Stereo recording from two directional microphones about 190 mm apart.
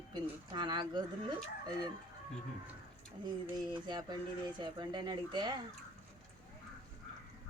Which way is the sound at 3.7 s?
25° right (ahead or behind).